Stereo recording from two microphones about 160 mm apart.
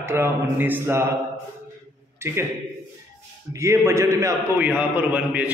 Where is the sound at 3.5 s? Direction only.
20° right (ahead or behind).